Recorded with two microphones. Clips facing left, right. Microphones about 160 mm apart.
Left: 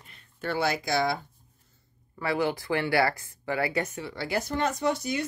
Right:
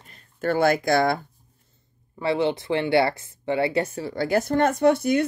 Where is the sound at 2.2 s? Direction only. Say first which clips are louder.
Right 5 dB; 25° right (ahead or behind).